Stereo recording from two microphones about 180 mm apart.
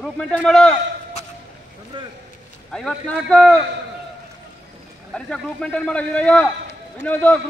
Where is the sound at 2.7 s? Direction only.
5° left (ahead or behind).